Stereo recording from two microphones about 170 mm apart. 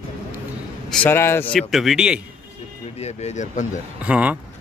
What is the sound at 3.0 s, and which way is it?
Speech, 40° left (ahead or behind).